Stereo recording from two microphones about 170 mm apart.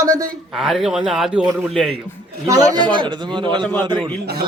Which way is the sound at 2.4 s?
20° right (ahead or behind).